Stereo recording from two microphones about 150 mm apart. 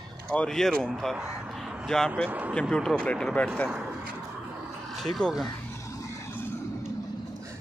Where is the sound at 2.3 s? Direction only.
10° right (ahead or behind).